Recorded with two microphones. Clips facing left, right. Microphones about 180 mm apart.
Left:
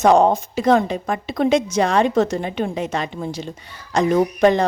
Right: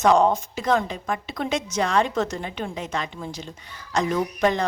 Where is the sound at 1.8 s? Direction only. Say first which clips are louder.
Left 6 dB; 65° left (ahead or behind).